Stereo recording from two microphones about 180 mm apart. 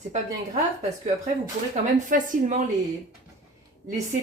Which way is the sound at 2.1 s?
45° right (ahead or behind).